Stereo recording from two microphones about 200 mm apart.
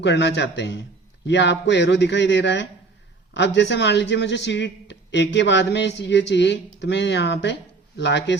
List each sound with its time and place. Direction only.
0.0 s a man's voice: 60° left (ahead or behind)